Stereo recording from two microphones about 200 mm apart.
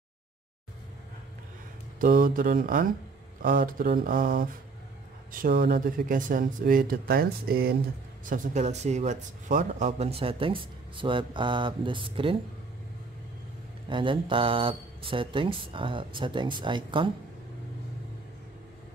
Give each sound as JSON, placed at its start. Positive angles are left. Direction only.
{"t": 2.0, "sound": "speech", "side_deg": -45}
{"t": 5.6, "sound": "speech", "side_deg": -45}
{"t": 8.3, "sound": "speech", "side_deg": -40}
{"t": 13.8, "sound": "speech", "side_deg": -25}